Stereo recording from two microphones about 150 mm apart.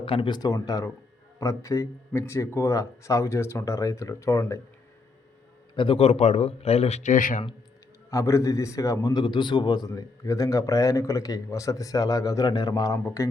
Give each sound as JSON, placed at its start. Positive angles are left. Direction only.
{"t": 0.0, "sound": "a man's voice", "side_deg": 35}
{"t": 5.7, "sound": "speech", "side_deg": 35}
{"t": 8.1, "sound": "a man's voice", "side_deg": 20}